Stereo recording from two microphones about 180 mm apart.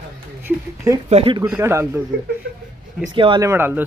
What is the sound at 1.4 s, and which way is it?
Speech, 15° right (ahead or behind).